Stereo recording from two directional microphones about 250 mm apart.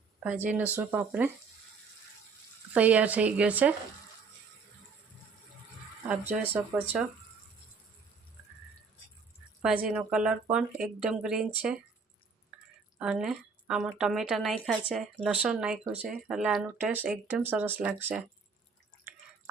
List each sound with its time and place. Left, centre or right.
0.2 s speech: centre
2.7 s a woman's voice: centre
6.1 s speech: centre
9.6 s a woman's voice: centre
13.0 s a woman's voice: centre